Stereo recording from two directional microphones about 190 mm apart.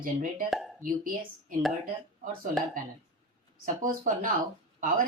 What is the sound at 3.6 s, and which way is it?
Speech, 45° right (ahead or behind).